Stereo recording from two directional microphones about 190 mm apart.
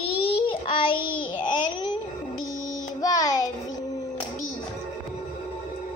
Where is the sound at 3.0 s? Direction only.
20° left (ahead or behind).